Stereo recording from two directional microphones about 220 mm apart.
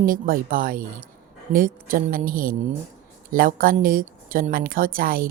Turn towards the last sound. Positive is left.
turn(degrees=-40)  # may be behind; listen again after turning